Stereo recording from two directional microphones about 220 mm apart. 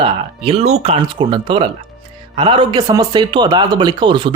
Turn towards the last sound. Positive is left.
turn(degrees=-20)  # may be behind; listen again after turning